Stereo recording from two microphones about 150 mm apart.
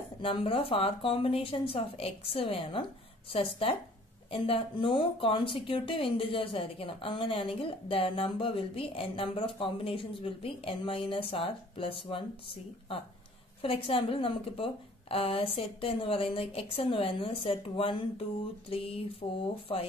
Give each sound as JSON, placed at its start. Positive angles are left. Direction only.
{"t": 0.2, "sound": "speech", "side_deg": 35}
{"t": 13.6, "sound": "speech", "side_deg": 40}